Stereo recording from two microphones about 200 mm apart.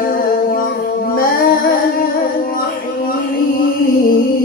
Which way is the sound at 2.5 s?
45° left (ahead or behind).